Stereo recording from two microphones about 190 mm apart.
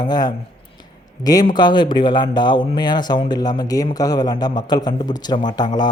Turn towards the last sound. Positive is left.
turn(degrees=20)  # may be behind; listen again after turning